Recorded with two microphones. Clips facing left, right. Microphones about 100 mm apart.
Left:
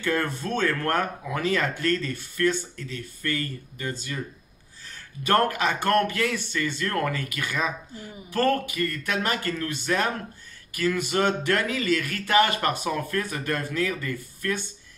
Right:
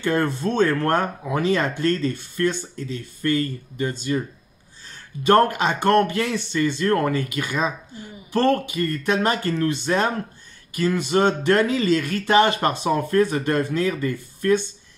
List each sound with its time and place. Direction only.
0.0 s speech: 25° right (ahead or behind)